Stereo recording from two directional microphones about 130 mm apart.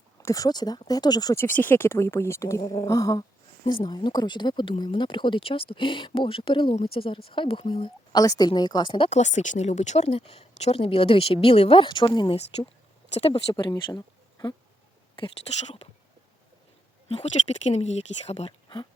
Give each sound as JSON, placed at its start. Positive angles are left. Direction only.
{"t": 0.2, "sound": "speech", "side_deg": 25}
{"t": 1.5, "sound": "speech", "side_deg": 15}
{"t": 8.2, "sound": "speech", "side_deg": 30}
{"t": 9.0, "sound": "speech", "side_deg": 60}
{"t": 13.1, "sound": "speech", "side_deg": 50}
{"t": 13.5, "sound": "speech", "side_deg": 35}
{"t": 17.1, "sound": "speech", "side_deg": 55}